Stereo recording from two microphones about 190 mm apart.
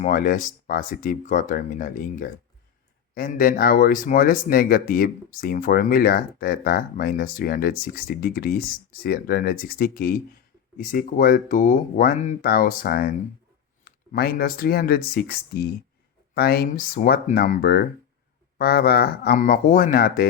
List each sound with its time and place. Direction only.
0.0 s speech: 45° left (ahead or behind)